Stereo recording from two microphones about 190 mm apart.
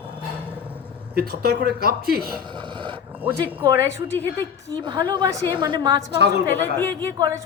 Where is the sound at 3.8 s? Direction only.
15° right (ahead or behind).